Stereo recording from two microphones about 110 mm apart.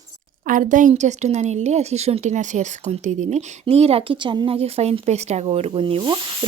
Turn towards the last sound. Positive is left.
turn(degrees=-50)  # may be behind; listen again after turning